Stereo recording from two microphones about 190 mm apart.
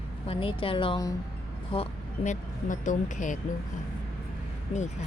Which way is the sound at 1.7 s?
35° left (ahead or behind).